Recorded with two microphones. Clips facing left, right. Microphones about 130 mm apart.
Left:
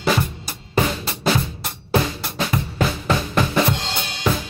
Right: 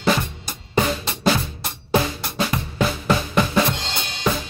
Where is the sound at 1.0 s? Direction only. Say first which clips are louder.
Right 1 dB; centre (ahead or behind).